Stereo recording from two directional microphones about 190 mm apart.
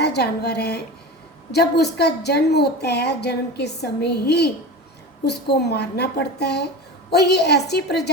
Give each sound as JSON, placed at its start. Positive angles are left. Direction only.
{"t": 0.0, "sound": "a woman's voice", "side_deg": 60}